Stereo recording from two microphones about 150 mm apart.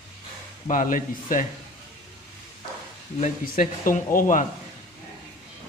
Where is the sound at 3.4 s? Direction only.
65° left (ahead or behind).